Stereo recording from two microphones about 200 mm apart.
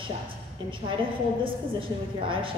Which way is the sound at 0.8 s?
25° right (ahead or behind).